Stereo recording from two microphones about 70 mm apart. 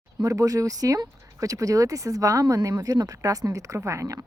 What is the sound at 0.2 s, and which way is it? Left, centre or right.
A woman's voice, right.